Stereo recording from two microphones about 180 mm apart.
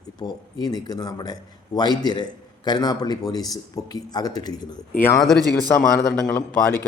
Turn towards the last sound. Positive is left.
turn(degrees=10)  # may be behind; listen again after turning